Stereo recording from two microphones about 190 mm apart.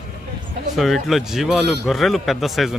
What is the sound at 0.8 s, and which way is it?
A man's voice, centre (ahead or behind).